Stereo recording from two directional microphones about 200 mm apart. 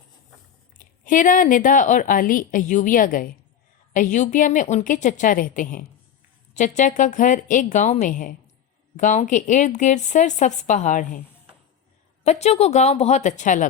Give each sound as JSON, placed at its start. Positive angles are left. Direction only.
{"t": 1.0, "sound": "a woman's voice", "side_deg": 40}
{"t": 12.2, "sound": "a woman's voice", "side_deg": 35}